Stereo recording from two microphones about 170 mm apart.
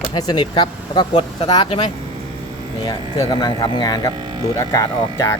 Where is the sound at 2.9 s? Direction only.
25° left (ahead or behind).